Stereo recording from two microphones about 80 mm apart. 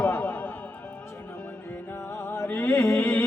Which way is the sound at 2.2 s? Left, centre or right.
Left.